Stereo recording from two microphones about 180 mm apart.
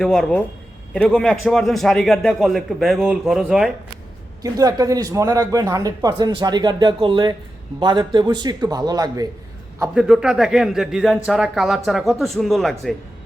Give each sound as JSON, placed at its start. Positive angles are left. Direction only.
{"t": 0.0, "sound": "a man's voice", "side_deg": 5}
{"t": 4.4, "sound": "speech", "side_deg": -20}
{"t": 9.9, "sound": "a man's voice", "side_deg": -5}